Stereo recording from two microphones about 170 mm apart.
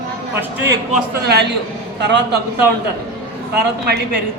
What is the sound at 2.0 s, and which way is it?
Speech, 90° right.